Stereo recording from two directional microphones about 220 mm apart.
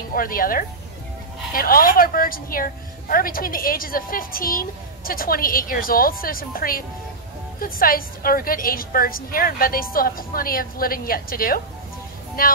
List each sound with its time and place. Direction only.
0.1 s a woman's voice: 40° left (ahead or behind)